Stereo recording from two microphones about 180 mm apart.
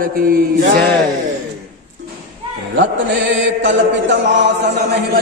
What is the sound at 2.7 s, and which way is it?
Mantra, 80° right.